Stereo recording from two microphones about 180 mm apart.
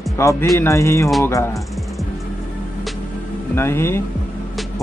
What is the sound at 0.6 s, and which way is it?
Speech, 15° left (ahead or behind).